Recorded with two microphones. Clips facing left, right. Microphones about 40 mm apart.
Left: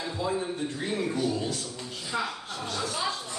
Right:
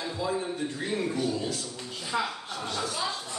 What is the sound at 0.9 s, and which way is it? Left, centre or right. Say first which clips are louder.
A man's voice: left 1 dB; centre.